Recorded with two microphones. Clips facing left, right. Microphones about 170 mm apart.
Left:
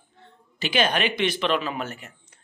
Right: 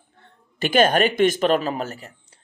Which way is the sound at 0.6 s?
50° right (ahead or behind).